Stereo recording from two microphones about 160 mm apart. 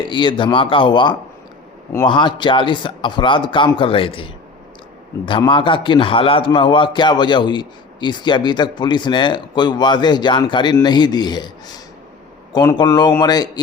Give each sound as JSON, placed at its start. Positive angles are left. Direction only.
{"t": 0.0, "sound": "a man's voice", "side_deg": 30}
{"t": 5.5, "sound": "a man's voice", "side_deg": 30}